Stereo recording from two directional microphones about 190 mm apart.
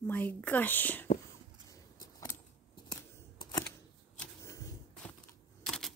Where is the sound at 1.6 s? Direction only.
20° left (ahead or behind).